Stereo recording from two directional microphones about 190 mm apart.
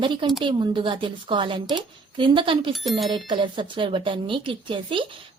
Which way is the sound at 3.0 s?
25° right (ahead or behind).